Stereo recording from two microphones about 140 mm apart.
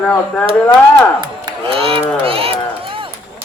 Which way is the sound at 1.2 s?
35° right (ahead or behind).